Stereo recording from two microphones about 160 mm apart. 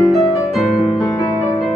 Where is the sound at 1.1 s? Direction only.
20° left (ahead or behind).